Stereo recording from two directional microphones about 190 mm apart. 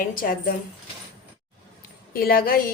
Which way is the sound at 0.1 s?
45° left (ahead or behind).